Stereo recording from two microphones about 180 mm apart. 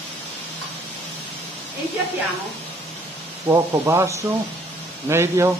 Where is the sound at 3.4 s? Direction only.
15° right (ahead or behind).